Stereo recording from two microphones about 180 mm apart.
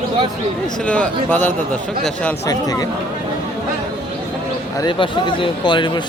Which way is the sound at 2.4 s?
20° left (ahead or behind).